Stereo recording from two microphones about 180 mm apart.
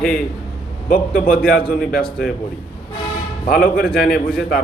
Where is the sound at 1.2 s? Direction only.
50° left (ahead or behind).